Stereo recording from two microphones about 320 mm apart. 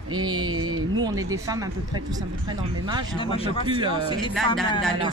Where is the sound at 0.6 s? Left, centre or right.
Right.